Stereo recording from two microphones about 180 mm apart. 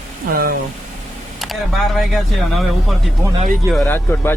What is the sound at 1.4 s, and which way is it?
Speech, centre (ahead or behind).